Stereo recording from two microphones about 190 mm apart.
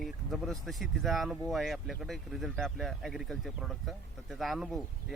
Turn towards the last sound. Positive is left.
turn(degrees=0)  # may be behind; listen again after turning